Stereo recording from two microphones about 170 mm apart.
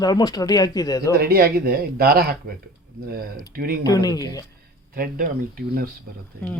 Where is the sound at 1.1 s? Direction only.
65° right (ahead or behind).